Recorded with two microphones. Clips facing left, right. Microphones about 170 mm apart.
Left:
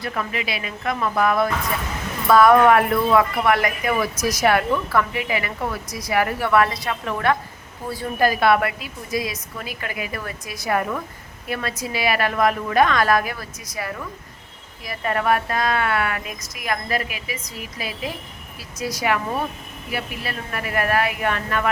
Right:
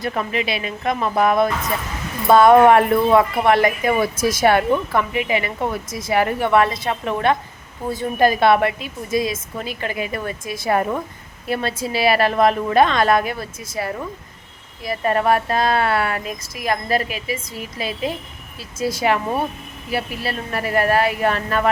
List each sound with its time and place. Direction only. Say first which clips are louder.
0.0 s speech: right 4 dB; 25° right (ahead or behind)